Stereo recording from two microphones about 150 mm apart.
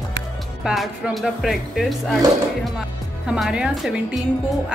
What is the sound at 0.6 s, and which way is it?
Speech, 5° right (ahead or behind).